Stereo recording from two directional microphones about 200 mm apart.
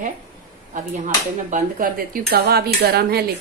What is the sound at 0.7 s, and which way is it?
Speech, 40° right (ahead or behind).